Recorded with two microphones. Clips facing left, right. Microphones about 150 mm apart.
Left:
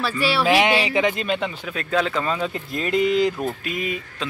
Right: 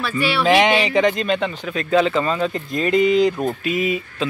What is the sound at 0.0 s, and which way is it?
Speech, 35° left (ahead or behind).